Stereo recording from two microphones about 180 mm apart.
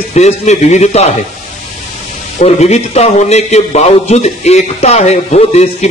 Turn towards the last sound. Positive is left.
turn(degrees=35)  # may be behind; listen again after turning